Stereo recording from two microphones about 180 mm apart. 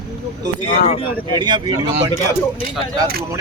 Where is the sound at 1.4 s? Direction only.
25° right (ahead or behind).